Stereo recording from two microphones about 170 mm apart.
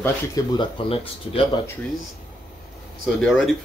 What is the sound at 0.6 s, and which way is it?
Speech, 30° left (ahead or behind).